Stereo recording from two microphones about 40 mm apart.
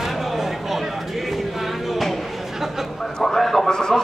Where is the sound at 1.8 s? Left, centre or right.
Centre.